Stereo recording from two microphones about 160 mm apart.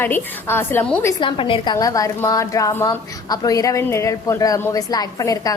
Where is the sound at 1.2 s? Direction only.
30° left (ahead or behind).